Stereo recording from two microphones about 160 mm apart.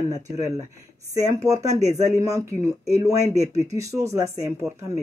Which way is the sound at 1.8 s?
45° right (ahead or behind).